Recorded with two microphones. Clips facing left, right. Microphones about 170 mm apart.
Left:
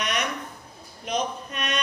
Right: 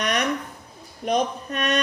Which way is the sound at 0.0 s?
45° right (ahead or behind).